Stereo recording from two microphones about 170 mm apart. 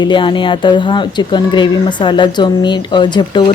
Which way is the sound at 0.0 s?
30° left (ahead or behind).